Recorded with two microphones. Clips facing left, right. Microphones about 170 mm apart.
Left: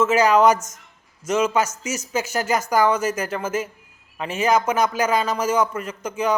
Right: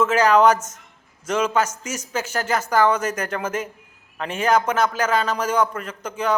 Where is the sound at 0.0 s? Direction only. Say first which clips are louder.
Even; 10° left (ahead or behind).